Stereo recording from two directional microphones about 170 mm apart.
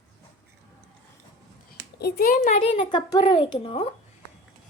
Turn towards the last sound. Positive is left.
turn(degrees=30)  # may be behind; listen again after turning